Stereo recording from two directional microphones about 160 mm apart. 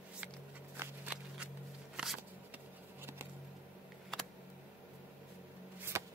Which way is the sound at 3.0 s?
15° right (ahead or behind).